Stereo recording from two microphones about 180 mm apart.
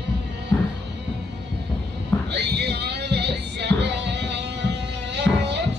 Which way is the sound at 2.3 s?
65° right (ahead or behind).